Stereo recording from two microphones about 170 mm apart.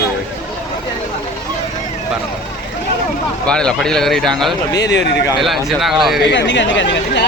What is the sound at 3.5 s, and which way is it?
Speech, 5° left (ahead or behind).